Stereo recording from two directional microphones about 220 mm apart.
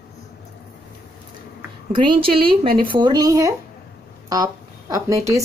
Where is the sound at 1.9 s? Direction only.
25° right (ahead or behind).